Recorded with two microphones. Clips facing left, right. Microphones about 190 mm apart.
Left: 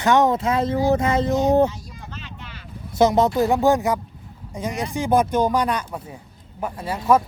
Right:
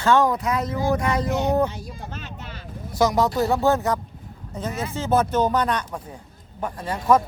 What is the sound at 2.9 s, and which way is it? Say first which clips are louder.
Speech: left 3 dB; 20° left (ahead or behind).